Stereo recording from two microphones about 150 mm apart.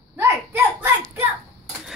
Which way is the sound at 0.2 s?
15° right (ahead or behind).